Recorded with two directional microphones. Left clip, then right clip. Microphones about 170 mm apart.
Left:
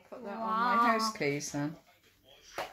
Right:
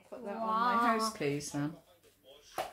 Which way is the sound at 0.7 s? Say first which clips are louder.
Left 5 dB; 25° left (ahead or behind).